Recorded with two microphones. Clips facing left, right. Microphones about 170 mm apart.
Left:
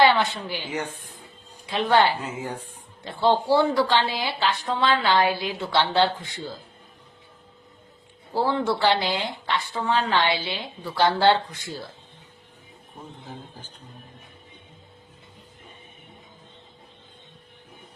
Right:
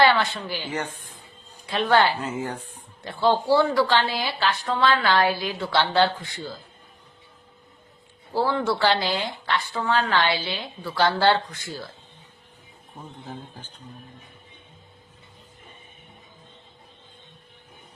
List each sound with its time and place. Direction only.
0.0 s a woman's voice: 15° left (ahead or behind)
8.3 s speech: 20° left (ahead or behind)